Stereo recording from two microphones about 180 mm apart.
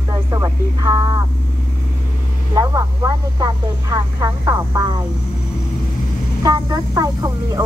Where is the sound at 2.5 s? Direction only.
20° right (ahead or behind).